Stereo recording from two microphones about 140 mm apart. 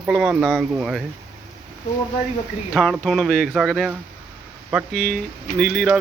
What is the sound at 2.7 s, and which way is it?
Speech, centre (ahead or behind).